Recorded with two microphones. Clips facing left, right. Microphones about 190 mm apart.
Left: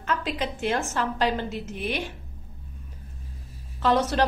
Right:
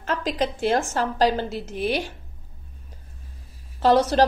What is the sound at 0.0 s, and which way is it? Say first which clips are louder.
A woman's voice: right 3 dB; 35° right (ahead or behind).